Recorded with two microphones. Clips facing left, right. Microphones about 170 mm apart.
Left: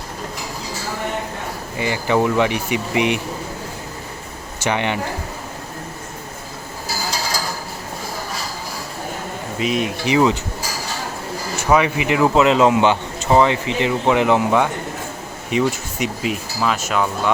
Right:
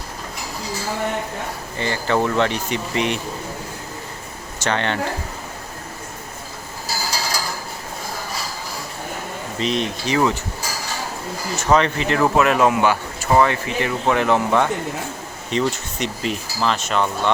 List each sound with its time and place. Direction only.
1.8 s speech: 10° left (ahead or behind)
4.6 s speech: 15° left (ahead or behind)
9.6 s speech: 5° left (ahead or behind)
11.5 s speech: 10° left (ahead or behind)